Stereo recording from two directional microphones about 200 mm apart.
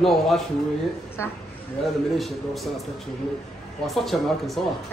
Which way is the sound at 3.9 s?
Centre (ahead or behind).